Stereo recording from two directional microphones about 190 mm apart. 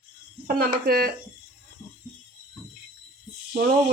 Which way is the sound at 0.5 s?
50° right (ahead or behind).